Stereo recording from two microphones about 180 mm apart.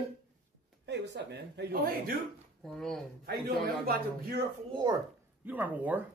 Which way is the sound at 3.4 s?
60° right (ahead or behind).